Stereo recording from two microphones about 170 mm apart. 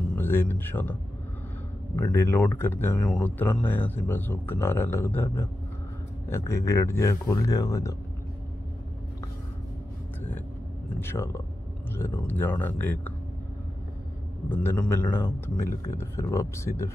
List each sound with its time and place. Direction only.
0.1 s speech: 15° left (ahead or behind)
2.0 s speech: 15° left (ahead or behind)
11.0 s speech: 15° left (ahead or behind)
14.5 s speech: 10° left (ahead or behind)